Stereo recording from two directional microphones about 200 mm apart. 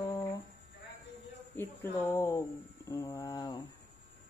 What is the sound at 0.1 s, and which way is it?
Music, 20° left (ahead or behind).